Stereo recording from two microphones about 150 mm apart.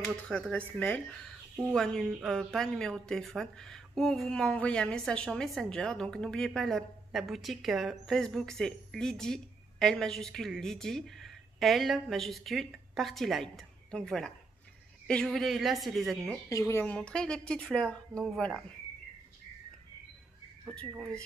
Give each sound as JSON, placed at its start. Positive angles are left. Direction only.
{"t": 0.0, "sound": "speech", "side_deg": 5}
{"t": 16.4, "sound": "speech", "side_deg": 20}
{"t": 16.8, "sound": "speech", "side_deg": 5}
{"t": 20.6, "sound": "speech", "side_deg": 5}